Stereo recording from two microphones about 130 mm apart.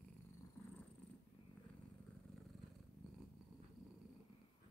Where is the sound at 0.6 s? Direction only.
15° left (ahead or behind).